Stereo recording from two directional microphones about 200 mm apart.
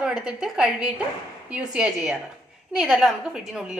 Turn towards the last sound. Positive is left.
turn(degrees=0)  # may be behind; listen again after turning